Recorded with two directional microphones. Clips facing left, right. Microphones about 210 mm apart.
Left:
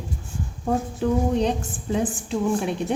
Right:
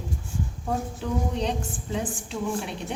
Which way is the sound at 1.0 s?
50° left (ahead or behind).